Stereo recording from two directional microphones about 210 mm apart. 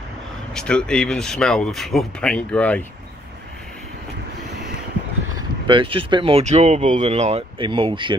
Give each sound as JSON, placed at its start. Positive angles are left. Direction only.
{"t": 0.6, "sound": "speech", "side_deg": 5}
{"t": 5.7, "sound": "speech", "side_deg": -25}